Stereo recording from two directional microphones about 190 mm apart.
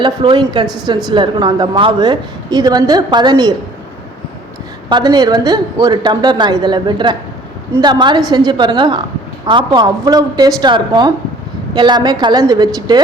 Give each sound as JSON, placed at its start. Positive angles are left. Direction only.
{"t": 0.0, "sound": "a woman's voice", "side_deg": -25}
{"t": 4.9, "sound": "a woman's voice", "side_deg": -20}